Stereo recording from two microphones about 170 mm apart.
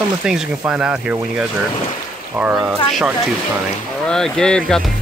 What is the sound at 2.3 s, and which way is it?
Speech, 10° right (ahead or behind).